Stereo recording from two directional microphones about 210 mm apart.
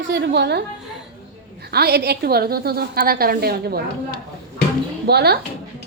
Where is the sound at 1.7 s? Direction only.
50° right (ahead or behind).